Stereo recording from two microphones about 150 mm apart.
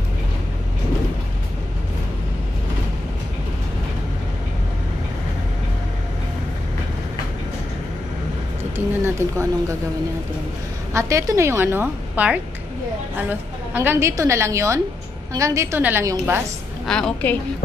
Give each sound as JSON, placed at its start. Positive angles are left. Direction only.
{"t": 8.7, "sound": "a sound", "side_deg": -20}
{"t": 10.9, "sound": "a woman's voice", "side_deg": -20}
{"t": 16.8, "sound": "a woman's voice", "side_deg": 5}